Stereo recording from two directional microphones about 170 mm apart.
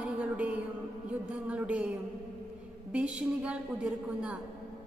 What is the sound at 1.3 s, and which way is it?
A woman's voice, 10° right (ahead or behind).